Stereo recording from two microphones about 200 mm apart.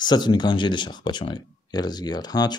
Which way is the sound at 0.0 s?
20° left (ahead or behind).